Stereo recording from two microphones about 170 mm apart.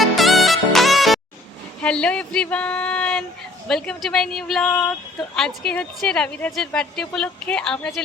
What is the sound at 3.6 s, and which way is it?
A woman's voice, 5° left (ahead or behind).